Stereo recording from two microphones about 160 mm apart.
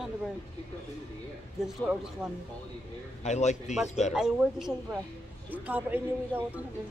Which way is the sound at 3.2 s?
45° left (ahead or behind).